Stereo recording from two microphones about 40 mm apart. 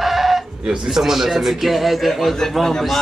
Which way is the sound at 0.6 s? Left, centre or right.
Centre.